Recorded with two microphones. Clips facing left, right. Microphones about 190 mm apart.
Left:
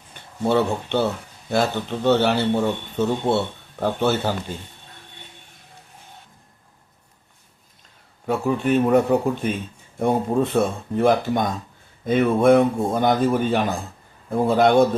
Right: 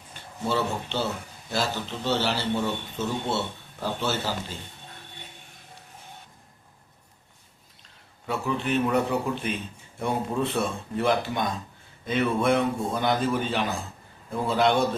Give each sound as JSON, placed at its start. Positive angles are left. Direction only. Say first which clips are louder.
{"t": 0.1, "sound": "speech", "louder": "left 8 dB", "side_deg": 55}
{"t": 8.3, "sound": "a man's voice", "louder": "left 7 dB", "side_deg": 50}